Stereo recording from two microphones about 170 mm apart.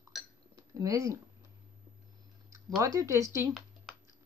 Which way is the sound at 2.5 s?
20° right (ahead or behind).